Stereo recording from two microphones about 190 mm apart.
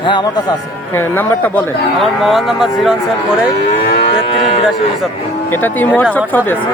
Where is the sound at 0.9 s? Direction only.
10° left (ahead or behind).